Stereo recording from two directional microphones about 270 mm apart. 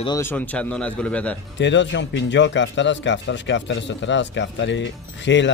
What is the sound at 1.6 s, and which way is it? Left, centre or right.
A man's voice, left.